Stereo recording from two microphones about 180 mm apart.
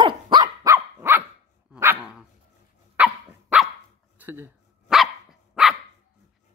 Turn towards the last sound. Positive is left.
turn(degrees=0)  # may be behind; listen again after turning